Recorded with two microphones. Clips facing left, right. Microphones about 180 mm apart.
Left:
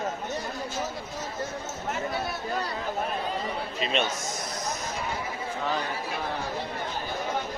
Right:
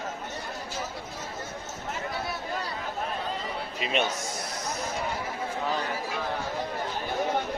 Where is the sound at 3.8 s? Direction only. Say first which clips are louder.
Even; 10° right (ahead or behind).